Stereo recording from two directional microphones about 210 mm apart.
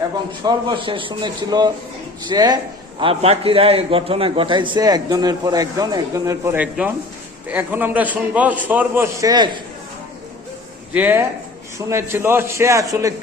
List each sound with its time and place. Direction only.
0.4 s a man's voice: 20° right (ahead or behind)
10.9 s a man's voice: 10° right (ahead or behind)